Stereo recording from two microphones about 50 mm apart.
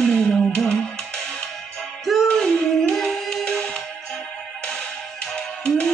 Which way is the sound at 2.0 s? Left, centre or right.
Centre.